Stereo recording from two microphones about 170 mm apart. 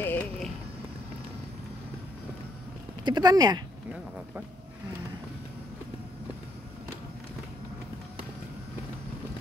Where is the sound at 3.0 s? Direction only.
25° right (ahead or behind).